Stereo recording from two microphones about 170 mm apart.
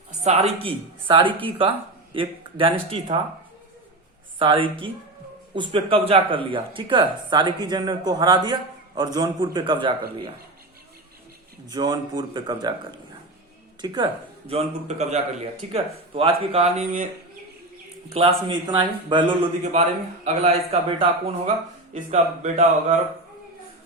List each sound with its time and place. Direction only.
0.3 s a man's voice: 35° right (ahead or behind)
4.4 s speech: 30° right (ahead or behind)
11.7 s a man's voice: 25° right (ahead or behind)
18.1 s speech: 35° right (ahead or behind)
19.6 s a man's voice: 40° right (ahead or behind)
22.1 s speech: 45° right (ahead or behind)